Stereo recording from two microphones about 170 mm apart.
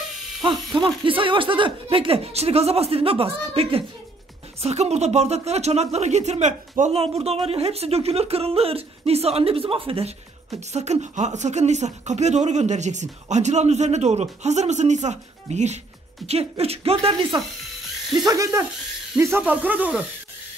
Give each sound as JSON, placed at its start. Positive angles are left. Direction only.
{"t": 0.7, "sound": "a woman's voice", "side_deg": -30}
{"t": 18.2, "sound": "speech", "side_deg": -20}